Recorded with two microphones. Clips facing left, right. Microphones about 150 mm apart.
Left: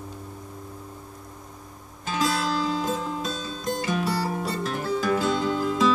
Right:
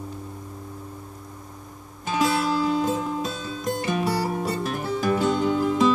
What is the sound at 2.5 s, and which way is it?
Music, 15° right (ahead or behind).